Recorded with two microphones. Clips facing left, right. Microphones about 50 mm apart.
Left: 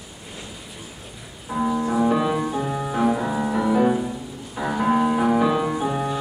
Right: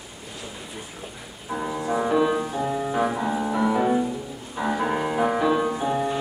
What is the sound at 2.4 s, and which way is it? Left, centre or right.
Music, centre.